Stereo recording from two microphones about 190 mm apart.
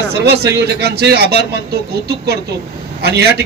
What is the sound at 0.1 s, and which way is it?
A man's voice, 60° right (ahead or behind).